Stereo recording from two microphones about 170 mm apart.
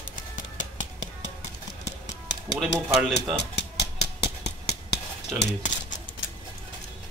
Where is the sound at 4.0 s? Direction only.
40° left (ahead or behind).